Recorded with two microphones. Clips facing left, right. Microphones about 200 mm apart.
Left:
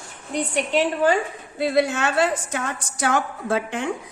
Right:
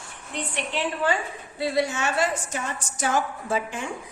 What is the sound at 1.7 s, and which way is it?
Speech, 60° left (ahead or behind).